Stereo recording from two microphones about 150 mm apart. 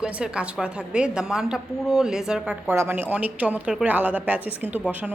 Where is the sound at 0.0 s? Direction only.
5° right (ahead or behind).